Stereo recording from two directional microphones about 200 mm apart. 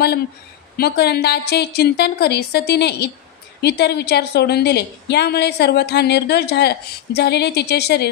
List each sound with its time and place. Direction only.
0.7 s a woman's voice: 55° left (ahead or behind)